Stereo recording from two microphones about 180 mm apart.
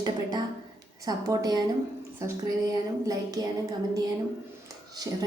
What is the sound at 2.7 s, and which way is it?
Speech, 20° right (ahead or behind).